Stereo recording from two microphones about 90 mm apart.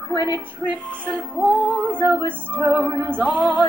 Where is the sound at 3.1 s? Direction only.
15° left (ahead or behind).